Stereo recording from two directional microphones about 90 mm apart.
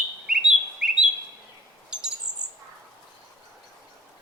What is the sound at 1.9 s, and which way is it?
Bird, 10° right (ahead or behind).